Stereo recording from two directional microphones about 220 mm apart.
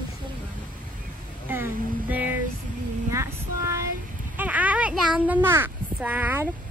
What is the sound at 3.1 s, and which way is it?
Female singing, 15° right (ahead or behind).